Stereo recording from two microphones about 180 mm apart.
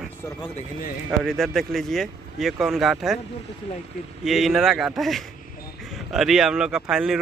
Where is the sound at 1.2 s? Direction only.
Centre (ahead or behind).